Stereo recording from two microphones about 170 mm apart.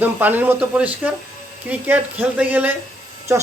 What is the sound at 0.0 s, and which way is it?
Speech, 10° right (ahead or behind).